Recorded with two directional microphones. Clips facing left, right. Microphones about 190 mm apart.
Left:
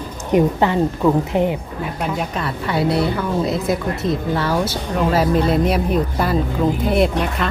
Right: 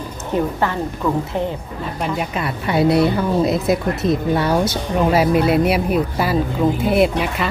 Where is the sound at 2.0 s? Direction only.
5° right (ahead or behind).